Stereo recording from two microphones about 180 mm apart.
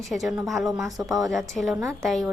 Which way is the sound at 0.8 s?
20° right (ahead or behind).